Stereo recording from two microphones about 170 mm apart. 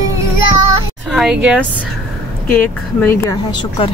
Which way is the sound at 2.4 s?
10° left (ahead or behind).